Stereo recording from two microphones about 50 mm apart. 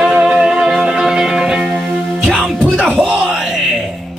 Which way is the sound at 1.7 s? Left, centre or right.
Centre.